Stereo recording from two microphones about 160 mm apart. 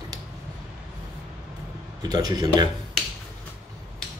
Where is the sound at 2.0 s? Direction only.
25° right (ahead or behind).